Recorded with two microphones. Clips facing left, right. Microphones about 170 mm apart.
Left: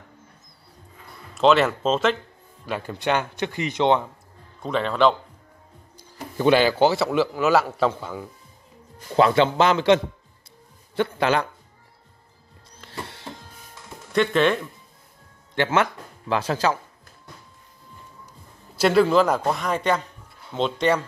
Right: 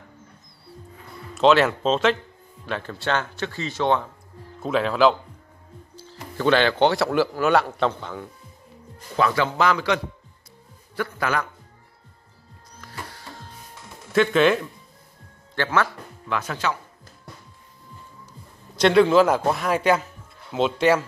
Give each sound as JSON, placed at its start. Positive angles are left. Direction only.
{"t": 1.3, "sound": "speech", "side_deg": 0}
{"t": 4.6, "sound": "speech", "side_deg": -5}
{"t": 5.9, "sound": "speech", "side_deg": 15}
{"t": 9.1, "sound": "a man's voice", "side_deg": 25}
{"t": 12.8, "sound": "music", "side_deg": 25}
{"t": 14.1, "sound": "speech", "side_deg": 0}
{"t": 15.5, "sound": "speech", "side_deg": 20}
{"t": 16.3, "sound": "speech", "side_deg": 30}
{"t": 18.8, "sound": "speech", "side_deg": 5}